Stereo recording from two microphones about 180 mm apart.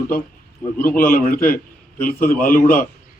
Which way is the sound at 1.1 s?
50° left (ahead or behind).